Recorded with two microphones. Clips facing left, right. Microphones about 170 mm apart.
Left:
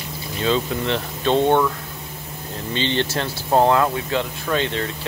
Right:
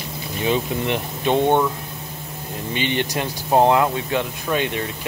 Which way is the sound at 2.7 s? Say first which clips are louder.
Left 1 dB; 15° right (ahead or behind).